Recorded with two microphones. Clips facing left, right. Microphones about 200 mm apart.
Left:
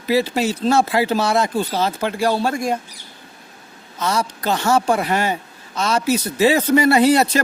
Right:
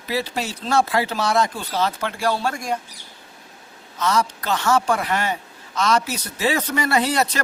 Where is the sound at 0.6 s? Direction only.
25° left (ahead or behind).